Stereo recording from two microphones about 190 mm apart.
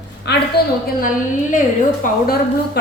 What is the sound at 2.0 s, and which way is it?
Speech, 45° left (ahead or behind).